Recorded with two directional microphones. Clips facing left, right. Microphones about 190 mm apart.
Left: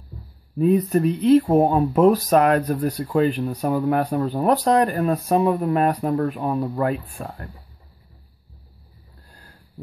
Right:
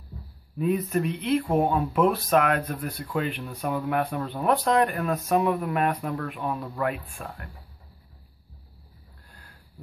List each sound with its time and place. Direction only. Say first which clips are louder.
0.6 s speech: left 7 dB; 35° left (ahead or behind)